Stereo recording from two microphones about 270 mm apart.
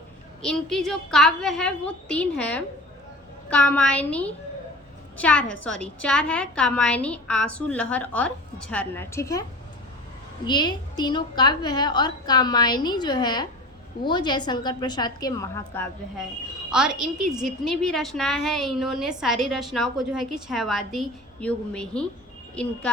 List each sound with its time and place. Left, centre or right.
0.4 s a woman's voice: centre
10.4 s a woman's voice: centre
16.7 s a woman's voice: centre